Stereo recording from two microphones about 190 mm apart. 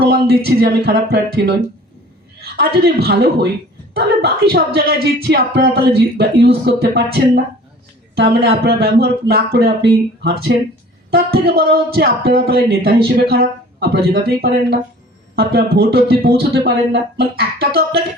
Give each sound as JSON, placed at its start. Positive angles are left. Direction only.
{"t": 0.0, "sound": "a man's voice", "side_deg": -55}